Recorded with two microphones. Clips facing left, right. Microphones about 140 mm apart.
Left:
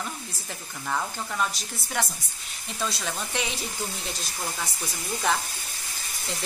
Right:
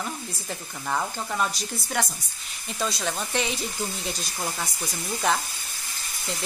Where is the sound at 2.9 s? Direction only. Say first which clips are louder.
Right 3 dB; 5° left (ahead or behind).